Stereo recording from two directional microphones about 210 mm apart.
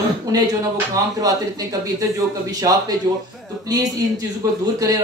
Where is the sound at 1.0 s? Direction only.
15° right (ahead or behind).